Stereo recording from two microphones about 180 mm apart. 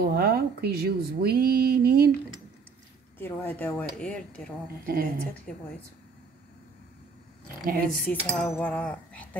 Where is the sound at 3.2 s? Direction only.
10° left (ahead or behind).